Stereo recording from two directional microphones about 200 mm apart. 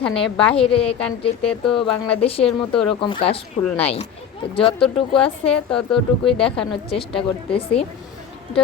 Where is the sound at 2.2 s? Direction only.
30° left (ahead or behind).